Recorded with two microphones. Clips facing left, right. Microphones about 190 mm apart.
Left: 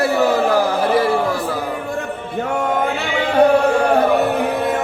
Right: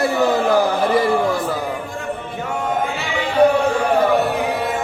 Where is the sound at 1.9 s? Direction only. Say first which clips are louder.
Left 2 dB; 55° left (ahead or behind).